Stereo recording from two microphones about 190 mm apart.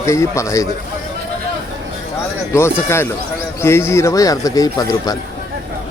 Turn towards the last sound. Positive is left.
turn(degrees=20)  # may be behind; listen again after turning